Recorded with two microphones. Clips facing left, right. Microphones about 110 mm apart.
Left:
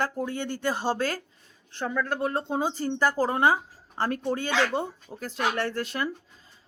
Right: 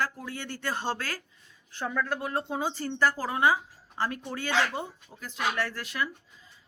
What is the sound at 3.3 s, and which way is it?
Speech, 30° left (ahead or behind).